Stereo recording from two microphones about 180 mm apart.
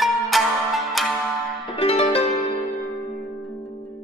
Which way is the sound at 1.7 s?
35° left (ahead or behind).